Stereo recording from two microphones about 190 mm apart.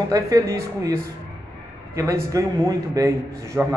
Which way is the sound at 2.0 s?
15° right (ahead or behind).